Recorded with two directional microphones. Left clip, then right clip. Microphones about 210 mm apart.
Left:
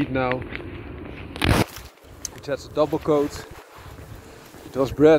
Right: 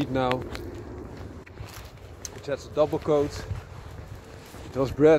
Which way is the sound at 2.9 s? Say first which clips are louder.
Left 3 dB; 35° left (ahead or behind).